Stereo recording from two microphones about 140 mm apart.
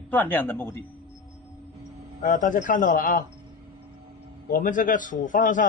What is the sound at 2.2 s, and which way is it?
A man's voice, 70° left (ahead or behind).